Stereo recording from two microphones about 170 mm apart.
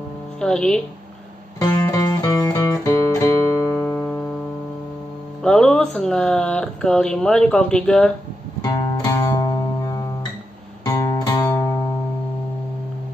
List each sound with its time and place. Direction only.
0.4 s speech: 5° left (ahead or behind)
1.6 s music: 20° left (ahead or behind)
5.4 s speech: 5° left (ahead or behind)
8.6 s music: 20° left (ahead or behind)